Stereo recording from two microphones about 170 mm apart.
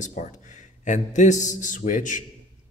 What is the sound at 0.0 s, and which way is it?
A man's voice, 45° left (ahead or behind).